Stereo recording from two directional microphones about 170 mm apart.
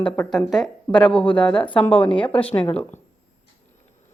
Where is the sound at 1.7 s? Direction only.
30° left (ahead or behind).